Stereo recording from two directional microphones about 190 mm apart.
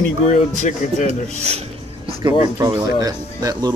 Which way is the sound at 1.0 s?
35° right (ahead or behind).